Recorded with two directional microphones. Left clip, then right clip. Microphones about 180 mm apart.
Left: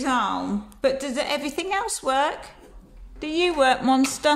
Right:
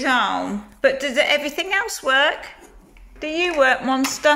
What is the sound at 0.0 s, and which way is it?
A woman's voice, 10° left (ahead or behind).